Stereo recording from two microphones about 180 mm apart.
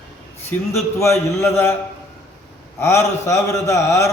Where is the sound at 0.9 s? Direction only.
15° left (ahead or behind).